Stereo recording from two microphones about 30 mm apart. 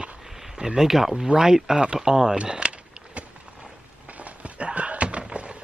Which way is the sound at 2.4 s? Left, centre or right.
Right.